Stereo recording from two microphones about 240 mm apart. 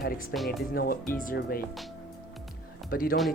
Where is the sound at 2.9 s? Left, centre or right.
Left.